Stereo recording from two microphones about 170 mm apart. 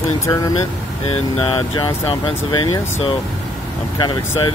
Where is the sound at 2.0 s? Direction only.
25° left (ahead or behind).